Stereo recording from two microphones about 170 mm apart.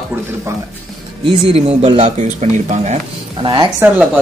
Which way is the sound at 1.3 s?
35° right (ahead or behind).